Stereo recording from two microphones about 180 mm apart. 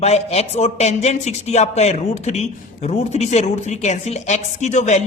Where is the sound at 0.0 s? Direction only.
35° left (ahead or behind).